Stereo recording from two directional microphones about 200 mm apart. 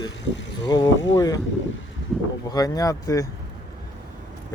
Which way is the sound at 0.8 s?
70° left (ahead or behind).